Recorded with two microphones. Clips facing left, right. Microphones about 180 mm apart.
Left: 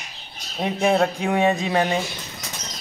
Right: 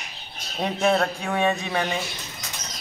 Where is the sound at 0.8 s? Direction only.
15° left (ahead or behind).